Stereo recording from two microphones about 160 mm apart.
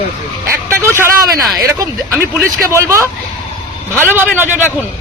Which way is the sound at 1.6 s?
20° right (ahead or behind).